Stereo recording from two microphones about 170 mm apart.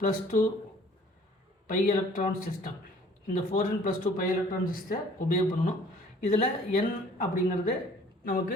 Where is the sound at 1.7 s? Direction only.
50° left (ahead or behind).